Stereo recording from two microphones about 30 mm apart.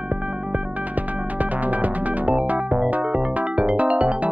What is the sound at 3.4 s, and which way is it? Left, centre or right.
Music, right.